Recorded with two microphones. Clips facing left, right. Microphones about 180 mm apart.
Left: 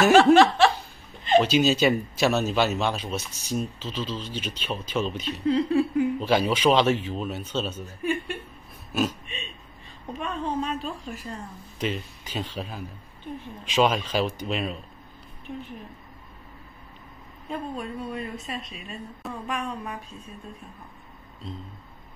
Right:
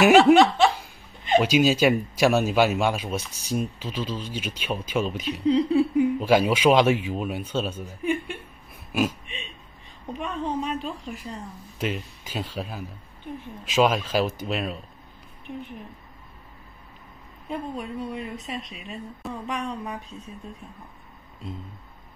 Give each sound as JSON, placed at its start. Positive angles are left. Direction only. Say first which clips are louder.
{"t": 0.3, "sound": "speech", "louder": "even", "side_deg": -15}
{"t": 17.5, "sound": "a woman's voice", "louder": "right 1 dB", "side_deg": -15}